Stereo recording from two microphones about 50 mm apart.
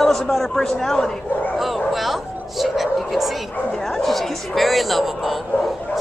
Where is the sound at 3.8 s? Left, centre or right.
Centre.